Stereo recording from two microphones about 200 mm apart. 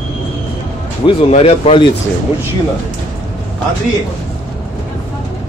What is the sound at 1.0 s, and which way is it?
Speech, 30° left (ahead or behind).